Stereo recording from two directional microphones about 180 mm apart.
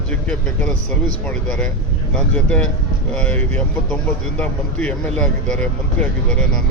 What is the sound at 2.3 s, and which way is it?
Speech, 5° left (ahead or behind).